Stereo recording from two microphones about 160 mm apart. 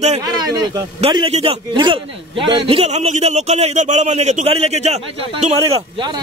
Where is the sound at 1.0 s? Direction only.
35° right (ahead or behind).